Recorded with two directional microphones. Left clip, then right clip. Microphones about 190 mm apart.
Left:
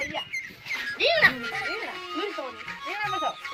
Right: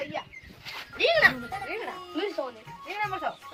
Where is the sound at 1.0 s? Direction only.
55° right (ahead or behind).